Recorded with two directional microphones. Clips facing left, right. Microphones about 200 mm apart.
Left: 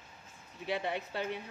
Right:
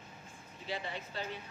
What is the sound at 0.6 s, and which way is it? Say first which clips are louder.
Speech: left 6 dB; 60° left (ahead or behind).